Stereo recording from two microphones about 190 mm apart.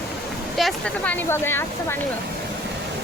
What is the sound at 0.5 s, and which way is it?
Speech, centre (ahead or behind).